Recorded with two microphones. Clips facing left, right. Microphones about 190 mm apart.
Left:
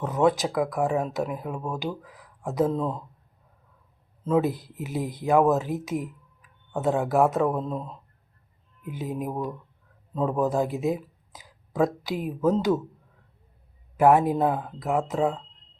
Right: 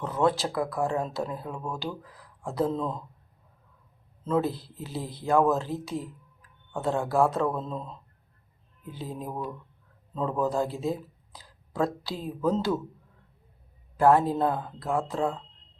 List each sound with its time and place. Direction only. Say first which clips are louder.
0.0 s speech: left 3 dB; 15° left (ahead or behind)
4.2 s speech: left 3 dB; 10° left (ahead or behind)
13.9 s speech: left 2 dB; 20° left (ahead or behind)